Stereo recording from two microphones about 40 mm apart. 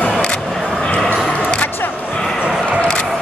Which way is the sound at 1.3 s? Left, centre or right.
Left.